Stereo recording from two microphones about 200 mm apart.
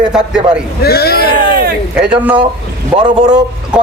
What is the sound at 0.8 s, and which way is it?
Speech, 50° left (ahead or behind).